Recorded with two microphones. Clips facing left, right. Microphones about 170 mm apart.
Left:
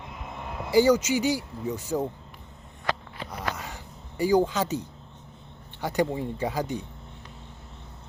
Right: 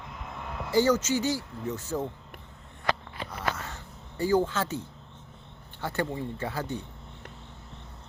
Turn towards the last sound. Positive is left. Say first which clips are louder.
# left 4 dB
turn(degrees=15)  # may be behind; listen again after turning